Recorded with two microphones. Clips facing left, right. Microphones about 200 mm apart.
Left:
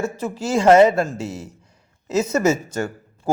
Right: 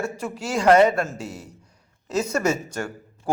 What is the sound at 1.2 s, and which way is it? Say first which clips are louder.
Speech: left 5 dB; 25° left (ahead or behind).